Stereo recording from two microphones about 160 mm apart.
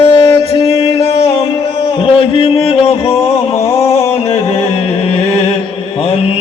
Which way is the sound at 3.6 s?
15° left (ahead or behind).